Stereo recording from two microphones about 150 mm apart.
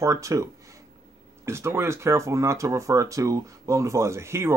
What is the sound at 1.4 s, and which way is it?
Speech, 15° right (ahead or behind).